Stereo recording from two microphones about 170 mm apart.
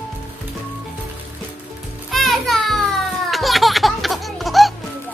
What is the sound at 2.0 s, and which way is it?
Music, centre (ahead or behind).